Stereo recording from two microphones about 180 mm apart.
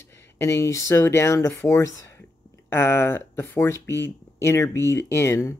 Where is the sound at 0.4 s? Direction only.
15° left (ahead or behind).